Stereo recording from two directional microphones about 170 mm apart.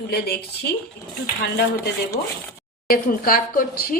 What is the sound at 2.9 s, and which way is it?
Speech, 60° left (ahead or behind).